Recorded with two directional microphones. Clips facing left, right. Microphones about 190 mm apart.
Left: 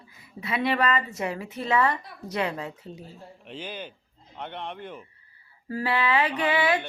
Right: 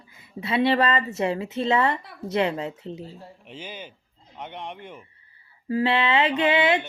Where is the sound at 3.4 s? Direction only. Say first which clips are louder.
Left 3 dB; 10° right (ahead or behind).